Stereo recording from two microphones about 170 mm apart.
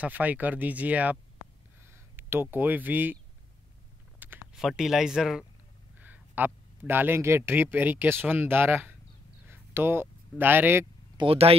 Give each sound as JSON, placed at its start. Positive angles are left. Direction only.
{"t": 0.0, "sound": "speech", "side_deg": -10}
{"t": 4.2, "sound": "a man's voice", "side_deg": -5}
{"t": 11.1, "sound": "speech", "side_deg": -35}